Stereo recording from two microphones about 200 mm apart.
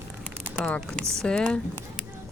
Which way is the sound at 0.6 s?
5° left (ahead or behind).